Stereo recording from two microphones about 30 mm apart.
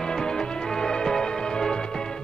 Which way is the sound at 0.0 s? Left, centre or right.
Left.